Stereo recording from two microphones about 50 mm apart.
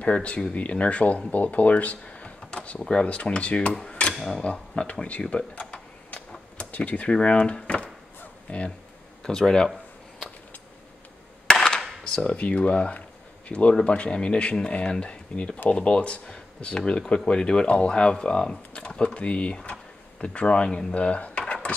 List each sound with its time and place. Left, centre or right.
0.0 s speech: left
4.1 s a sound: centre
4.4 s speech: left
6.6 s speech: left
9.2 s speech: centre
11.5 s cap gun: centre
12.0 s speech: centre